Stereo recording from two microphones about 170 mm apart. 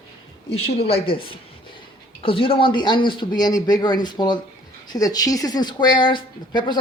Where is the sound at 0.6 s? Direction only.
35° left (ahead or behind).